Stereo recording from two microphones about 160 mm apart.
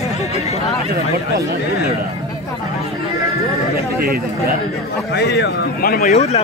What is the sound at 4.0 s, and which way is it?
Speech, 75° right (ahead or behind).